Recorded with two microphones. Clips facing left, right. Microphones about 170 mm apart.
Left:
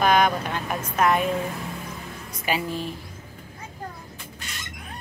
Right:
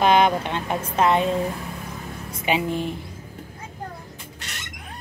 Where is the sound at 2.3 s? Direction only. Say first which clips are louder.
Right 4 dB; 20° right (ahead or behind).